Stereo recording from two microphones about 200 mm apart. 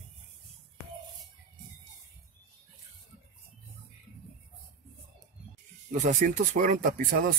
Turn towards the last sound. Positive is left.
turn(degrees=-45)  # may be behind; listen again after turning